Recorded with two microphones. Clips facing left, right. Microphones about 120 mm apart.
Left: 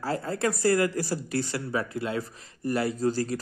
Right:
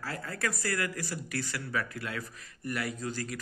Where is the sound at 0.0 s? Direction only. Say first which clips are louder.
Left 8 dB; 30° left (ahead or behind).